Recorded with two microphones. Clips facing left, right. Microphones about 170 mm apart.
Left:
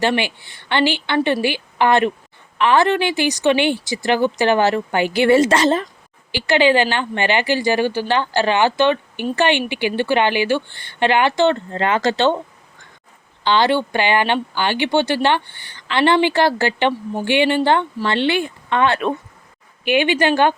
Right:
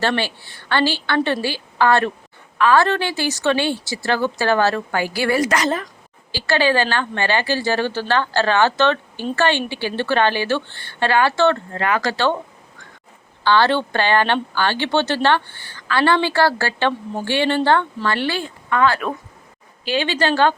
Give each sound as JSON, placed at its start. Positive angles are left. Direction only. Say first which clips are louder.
{"t": 0.0, "sound": "speech", "louder": "left 2 dB", "side_deg": 15}
{"t": 13.4, "sound": "speech", "louder": "even", "side_deg": 15}